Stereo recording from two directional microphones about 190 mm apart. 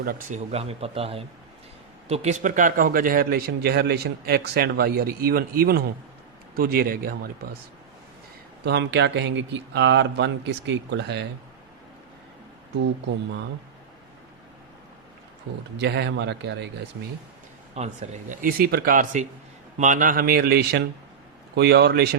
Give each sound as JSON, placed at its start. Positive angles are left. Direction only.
{"t": 0.0, "sound": "speech", "side_deg": -45}
{"t": 8.6, "sound": "speech", "side_deg": -65}
{"t": 15.8, "sound": "speech", "side_deg": -65}
{"t": 17.7, "sound": "speech", "side_deg": -40}